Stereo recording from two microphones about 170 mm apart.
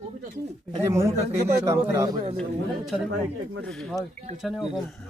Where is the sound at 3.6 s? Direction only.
Centre (ahead or behind).